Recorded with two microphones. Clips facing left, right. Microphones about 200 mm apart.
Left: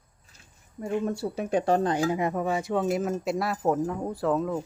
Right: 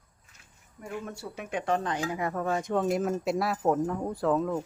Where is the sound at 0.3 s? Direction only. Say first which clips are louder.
Left 10 dB; 30° left (ahead or behind).